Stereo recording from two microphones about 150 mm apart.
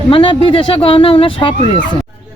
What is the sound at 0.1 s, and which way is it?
Speech, 35° left (ahead or behind).